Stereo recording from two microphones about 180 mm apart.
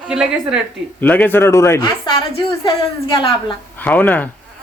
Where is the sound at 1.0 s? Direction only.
10° left (ahead or behind).